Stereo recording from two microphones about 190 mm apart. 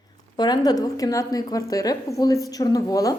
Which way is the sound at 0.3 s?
20° left (ahead or behind).